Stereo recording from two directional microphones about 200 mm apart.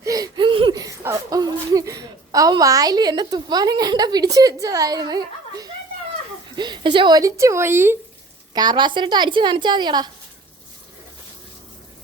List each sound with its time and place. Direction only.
0.0 s a sound: 20° right (ahead or behind)
6.6 s speech: 20° right (ahead or behind)
8.5 s a woman's voice: 20° right (ahead or behind)